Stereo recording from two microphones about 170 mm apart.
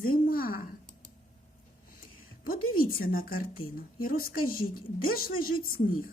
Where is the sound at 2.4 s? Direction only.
55° left (ahead or behind).